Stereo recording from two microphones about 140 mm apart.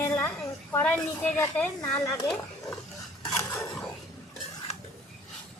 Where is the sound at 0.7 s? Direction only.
10° left (ahead or behind).